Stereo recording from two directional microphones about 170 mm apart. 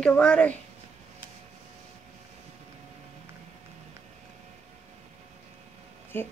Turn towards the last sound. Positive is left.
turn(degrees=15)  # may be behind; listen again after turning